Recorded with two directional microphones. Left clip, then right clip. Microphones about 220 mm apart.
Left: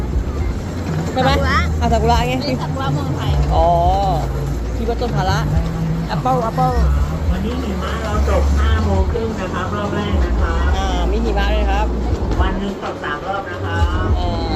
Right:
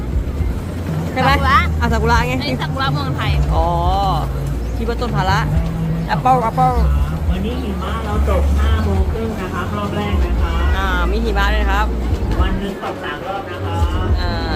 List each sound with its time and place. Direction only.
1.1 s vehicle: 5° right (ahead or behind)
2.5 s speech: 10° right (ahead or behind)
10.8 s speech: 15° right (ahead or behind)